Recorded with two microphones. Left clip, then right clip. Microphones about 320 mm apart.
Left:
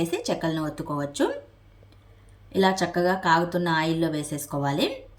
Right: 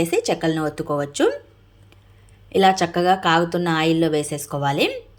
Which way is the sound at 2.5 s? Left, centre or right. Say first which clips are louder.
Right 6 dB; centre.